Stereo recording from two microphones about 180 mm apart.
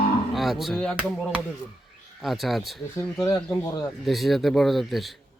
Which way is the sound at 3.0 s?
20° left (ahead or behind).